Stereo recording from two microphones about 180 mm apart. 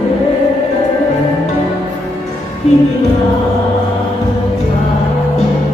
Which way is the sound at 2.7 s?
35° left (ahead or behind).